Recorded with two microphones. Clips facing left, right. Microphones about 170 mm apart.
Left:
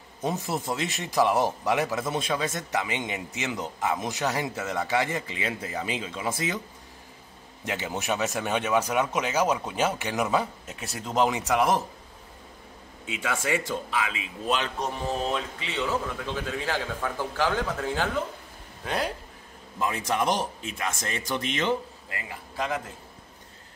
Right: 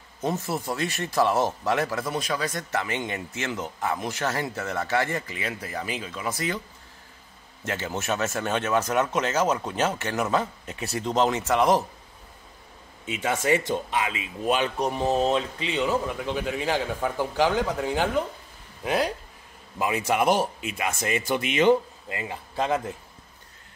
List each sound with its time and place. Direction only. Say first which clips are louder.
0.2 s speech: right 1 dB; 15° left (ahead or behind)
7.6 s speech: right 1 dB; 15° left (ahead or behind)
13.2 s speech: right 4 dB; 25° right (ahead or behind)
14.5 s a man's voice: right 4 dB; 10° right (ahead or behind)
15.0 s speech: right 6 dB; 30° right (ahead or behind)
15.6 s a man's voice: right 4 dB; 15° right (ahead or behind)
18.9 s a man's voice: right 4 dB; centre (ahead or behind)
22.1 s speech: right 6 dB; 25° right (ahead or behind)